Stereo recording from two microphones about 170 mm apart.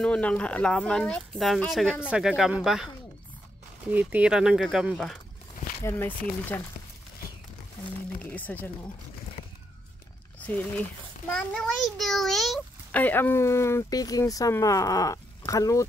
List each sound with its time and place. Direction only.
0.0 s speech: 5° left (ahead or behind)
3.9 s speech: 10° right (ahead or behind)
5.9 s a child's voice: 15° left (ahead or behind)
8.2 s a sound: 10° left (ahead or behind)
10.4 s a child's voice: 10° left (ahead or behind)